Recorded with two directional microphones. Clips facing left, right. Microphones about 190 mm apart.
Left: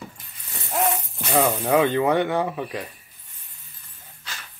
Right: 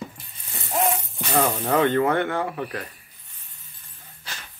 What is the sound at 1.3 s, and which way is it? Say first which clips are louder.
Speech: left 2 dB; 10° left (ahead or behind).